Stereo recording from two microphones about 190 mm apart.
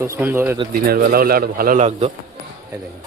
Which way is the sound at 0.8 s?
55° right (ahead or behind).